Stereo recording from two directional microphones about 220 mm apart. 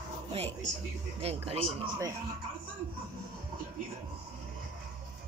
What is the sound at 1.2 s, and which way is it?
Speech, 25° right (ahead or behind).